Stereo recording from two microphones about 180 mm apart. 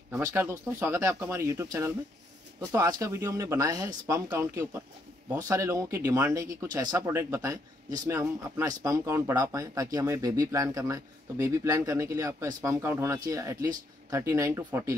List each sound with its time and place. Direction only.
0.2 s speech: 10° right (ahead or behind)